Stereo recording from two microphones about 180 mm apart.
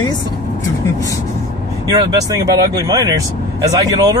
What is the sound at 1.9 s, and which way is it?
Speech, 20° right (ahead or behind).